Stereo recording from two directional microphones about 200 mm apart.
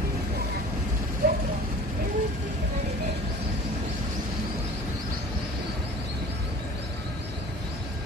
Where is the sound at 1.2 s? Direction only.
50° right (ahead or behind).